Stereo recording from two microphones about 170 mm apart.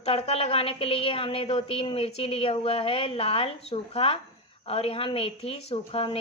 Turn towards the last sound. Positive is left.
turn(degrees=35)  # may be behind; listen again after turning